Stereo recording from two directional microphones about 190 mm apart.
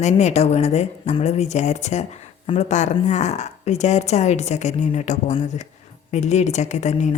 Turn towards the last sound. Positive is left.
turn(degrees=40)  # may be behind; listen again after turning